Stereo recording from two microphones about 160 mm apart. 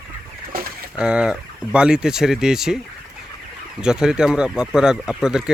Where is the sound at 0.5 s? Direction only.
65° right (ahead or behind).